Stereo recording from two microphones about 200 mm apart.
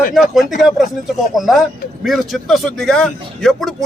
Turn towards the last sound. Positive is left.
turn(degrees=0)  # may be behind; listen again after turning